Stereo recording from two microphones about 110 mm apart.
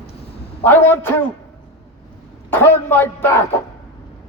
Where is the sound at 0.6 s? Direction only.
20° left (ahead or behind).